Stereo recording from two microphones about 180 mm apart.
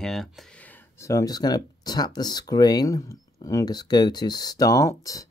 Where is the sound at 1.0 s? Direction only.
20° left (ahead or behind).